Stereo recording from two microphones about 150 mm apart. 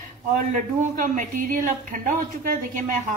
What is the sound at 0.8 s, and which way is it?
A woman's voice, 60° right (ahead or behind).